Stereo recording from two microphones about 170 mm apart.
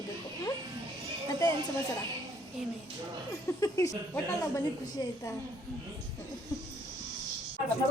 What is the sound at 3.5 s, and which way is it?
Speech, 20° left (ahead or behind).